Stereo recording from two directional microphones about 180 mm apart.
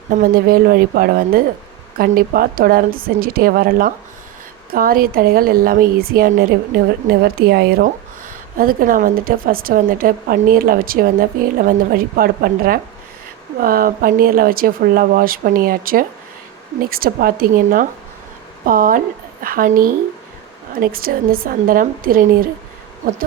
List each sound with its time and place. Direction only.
0.1 s a woman's voice: 50° right (ahead or behind)
8.5 s a woman's voice: 50° right (ahead or behind)